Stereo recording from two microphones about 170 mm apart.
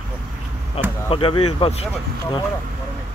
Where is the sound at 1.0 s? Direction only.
30° left (ahead or behind).